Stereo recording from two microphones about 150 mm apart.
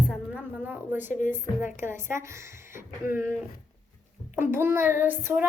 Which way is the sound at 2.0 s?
20° right (ahead or behind).